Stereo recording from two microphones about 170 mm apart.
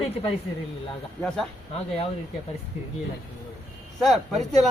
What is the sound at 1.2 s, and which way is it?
Speech, 5° left (ahead or behind).